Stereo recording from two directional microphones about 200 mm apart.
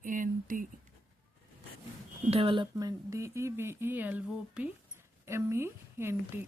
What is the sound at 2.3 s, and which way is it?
Speech, 25° right (ahead or behind).